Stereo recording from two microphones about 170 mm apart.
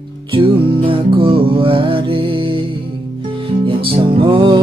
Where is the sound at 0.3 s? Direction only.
30° right (ahead or behind).